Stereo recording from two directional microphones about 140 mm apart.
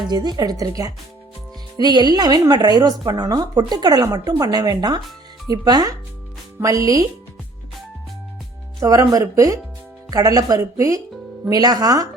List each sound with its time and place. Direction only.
0.1 s a woman's voice: 30° right (ahead or behind)
1.8 s a woman's voice: 30° right (ahead or behind)
8.8 s a woman's voice: 25° right (ahead or behind)